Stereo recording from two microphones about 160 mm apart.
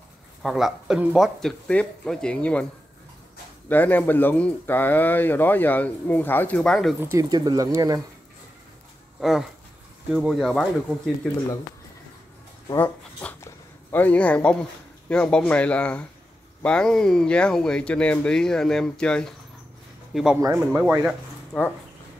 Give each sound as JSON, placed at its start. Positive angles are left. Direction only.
{"t": 0.4, "sound": "speech", "side_deg": 0}
{"t": 3.6, "sound": "speech", "side_deg": 10}
{"t": 7.0, "sound": "speech", "side_deg": -20}
{"t": 9.2, "sound": "speech", "side_deg": 0}
{"t": 12.7, "sound": "speech", "side_deg": 10}
{"t": 20.3, "sound": "speech", "side_deg": -15}
{"t": 21.5, "sound": "speech", "side_deg": 10}